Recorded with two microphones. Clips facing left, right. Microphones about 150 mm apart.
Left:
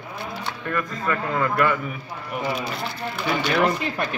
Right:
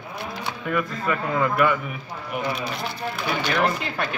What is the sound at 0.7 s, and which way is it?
A man's voice, 10° right (ahead or behind).